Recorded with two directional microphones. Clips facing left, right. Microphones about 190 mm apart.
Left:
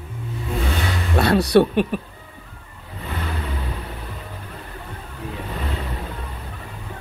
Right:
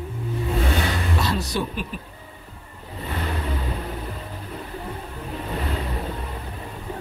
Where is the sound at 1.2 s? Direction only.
65° left (ahead or behind).